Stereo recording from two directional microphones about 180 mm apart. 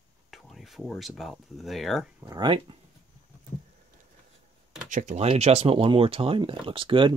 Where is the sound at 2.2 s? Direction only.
20° right (ahead or behind).